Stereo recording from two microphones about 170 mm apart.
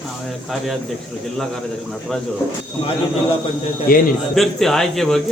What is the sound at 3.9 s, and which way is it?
Speech, 60° left (ahead or behind).